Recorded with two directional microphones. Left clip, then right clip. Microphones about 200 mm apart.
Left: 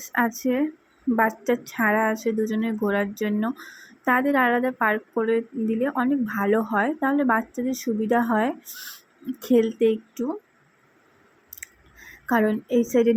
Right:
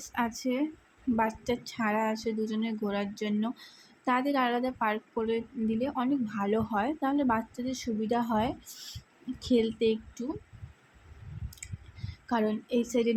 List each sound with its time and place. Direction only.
0.0 s a woman's voice: 10° left (ahead or behind)
12.2 s a woman's voice: 10° left (ahead or behind)